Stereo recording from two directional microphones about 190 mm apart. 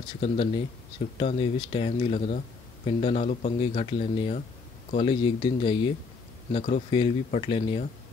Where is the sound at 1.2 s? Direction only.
30° left (ahead or behind).